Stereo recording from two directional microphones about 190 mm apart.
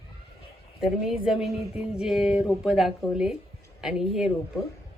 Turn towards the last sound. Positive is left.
turn(degrees=0)  # may be behind; listen again after turning